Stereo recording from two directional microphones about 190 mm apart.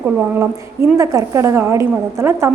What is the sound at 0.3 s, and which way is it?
A woman's voice, 15° right (ahead or behind).